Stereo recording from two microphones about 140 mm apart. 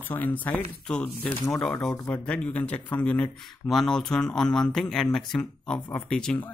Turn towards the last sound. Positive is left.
turn(degrees=5)  # may be behind; listen again after turning